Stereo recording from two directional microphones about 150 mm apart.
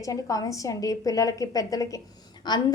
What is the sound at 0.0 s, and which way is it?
A woman's voice, 20° left (ahead or behind).